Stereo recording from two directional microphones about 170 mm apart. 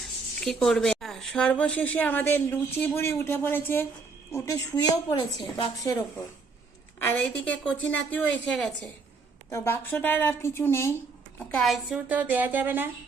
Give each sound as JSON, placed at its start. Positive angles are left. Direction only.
{"t": 0.3, "sound": "a woman's voice", "side_deg": 5}
{"t": 7.0, "sound": "a woman's voice", "side_deg": 10}
{"t": 9.5, "sound": "a woman's voice", "side_deg": 15}
{"t": 11.3, "sound": "speech", "side_deg": 5}